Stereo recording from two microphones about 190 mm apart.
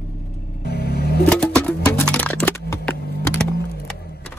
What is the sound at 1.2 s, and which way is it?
Music, 5° left (ahead or behind).